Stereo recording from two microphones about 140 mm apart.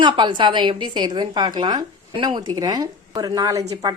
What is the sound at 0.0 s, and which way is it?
A woman's voice, 35° right (ahead or behind).